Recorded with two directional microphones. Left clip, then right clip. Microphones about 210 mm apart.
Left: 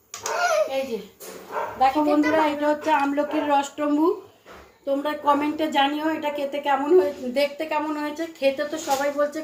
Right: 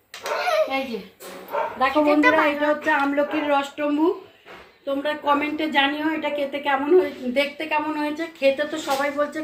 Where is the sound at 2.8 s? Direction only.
5° right (ahead or behind).